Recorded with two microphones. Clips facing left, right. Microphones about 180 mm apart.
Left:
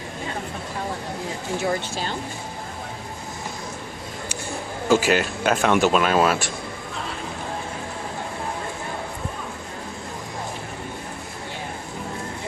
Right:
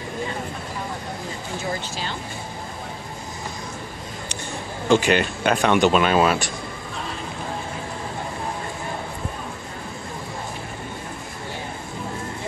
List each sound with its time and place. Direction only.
1.6 s speech: 50° left (ahead or behind)
4.8 s speech: 5° left (ahead or behind)